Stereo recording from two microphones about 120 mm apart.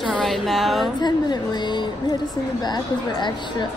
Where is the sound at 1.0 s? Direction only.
35° left (ahead or behind).